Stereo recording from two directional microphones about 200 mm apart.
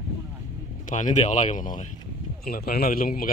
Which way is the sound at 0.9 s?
40° left (ahead or behind).